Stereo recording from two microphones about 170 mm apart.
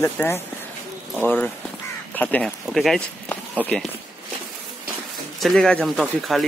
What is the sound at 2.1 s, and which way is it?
Speech, 10° left (ahead or behind).